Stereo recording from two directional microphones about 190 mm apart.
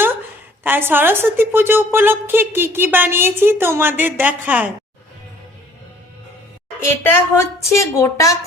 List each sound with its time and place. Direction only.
0.6 s a woman's voice: 10° right (ahead or behind)
7.0 s a woman's voice: 15° left (ahead or behind)